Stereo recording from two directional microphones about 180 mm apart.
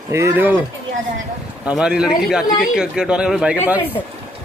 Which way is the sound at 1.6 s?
5° right (ahead or behind).